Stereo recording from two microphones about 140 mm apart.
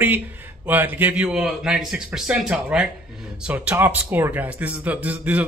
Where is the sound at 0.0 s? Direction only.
15° right (ahead or behind).